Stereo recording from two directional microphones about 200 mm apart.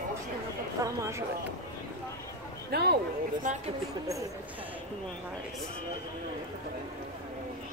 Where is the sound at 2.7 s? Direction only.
50° right (ahead or behind).